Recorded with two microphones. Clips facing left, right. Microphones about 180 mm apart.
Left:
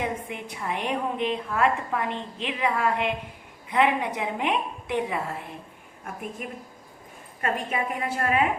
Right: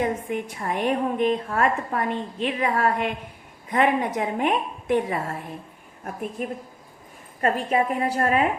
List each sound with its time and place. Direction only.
0.0 s a woman's voice: 45° right (ahead or behind)
6.4 s a woman's voice: 35° right (ahead or behind)